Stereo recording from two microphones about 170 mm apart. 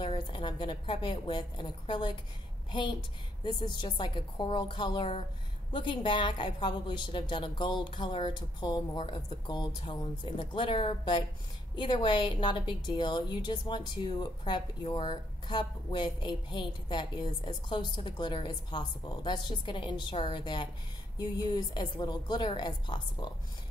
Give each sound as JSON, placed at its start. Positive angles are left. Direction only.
{"t": 0.0, "sound": "a woman's voice", "side_deg": 30}